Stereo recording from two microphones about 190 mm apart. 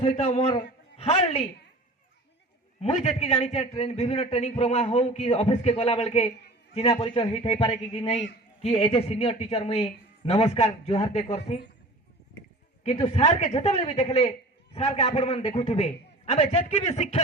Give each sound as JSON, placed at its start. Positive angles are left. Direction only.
{"t": 0.0, "sound": "a man's voice", "side_deg": 35}
{"t": 2.8, "sound": "a man's voice", "side_deg": 35}
{"t": 12.8, "sound": "a man's voice", "side_deg": 35}